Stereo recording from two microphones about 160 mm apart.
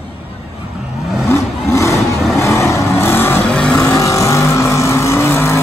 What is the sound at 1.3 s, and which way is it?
Vehicle, 15° left (ahead or behind).